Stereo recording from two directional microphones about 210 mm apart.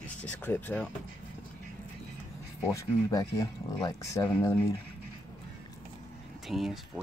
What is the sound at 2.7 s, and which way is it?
Speech, 15° left (ahead or behind).